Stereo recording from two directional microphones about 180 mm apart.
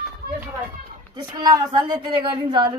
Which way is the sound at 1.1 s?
20° right (ahead or behind).